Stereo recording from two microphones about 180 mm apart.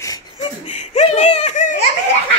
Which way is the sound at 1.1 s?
35° left (ahead or behind).